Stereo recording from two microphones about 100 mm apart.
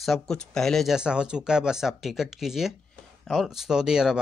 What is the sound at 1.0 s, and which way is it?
Speech, 10° right (ahead or behind).